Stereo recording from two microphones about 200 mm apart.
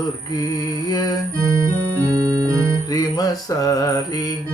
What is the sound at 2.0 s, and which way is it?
Music, 20° right (ahead or behind).